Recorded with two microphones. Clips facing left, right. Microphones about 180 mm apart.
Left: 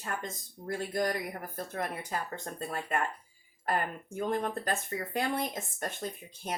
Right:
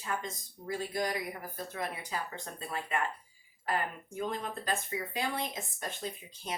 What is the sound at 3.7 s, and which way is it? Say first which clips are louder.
Speech: left 2 dB; 55° left (ahead or behind).